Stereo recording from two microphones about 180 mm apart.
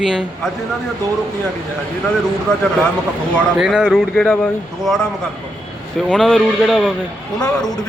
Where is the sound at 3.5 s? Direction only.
5° right (ahead or behind).